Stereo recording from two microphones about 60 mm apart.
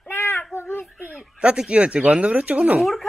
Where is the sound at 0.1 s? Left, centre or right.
Left.